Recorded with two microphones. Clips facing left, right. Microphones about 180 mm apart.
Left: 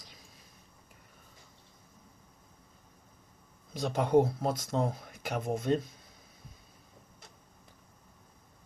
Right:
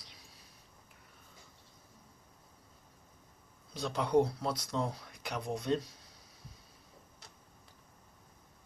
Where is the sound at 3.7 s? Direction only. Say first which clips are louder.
Left 3 dB; 50° left (ahead or behind).